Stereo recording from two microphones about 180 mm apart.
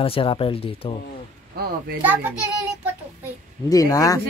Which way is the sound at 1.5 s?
60° right (ahead or behind).